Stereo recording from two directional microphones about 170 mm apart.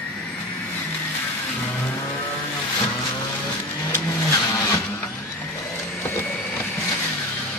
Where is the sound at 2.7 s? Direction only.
25° left (ahead or behind).